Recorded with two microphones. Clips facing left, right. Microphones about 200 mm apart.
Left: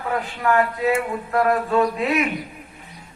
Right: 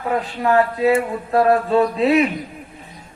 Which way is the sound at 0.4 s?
35° right (ahead or behind).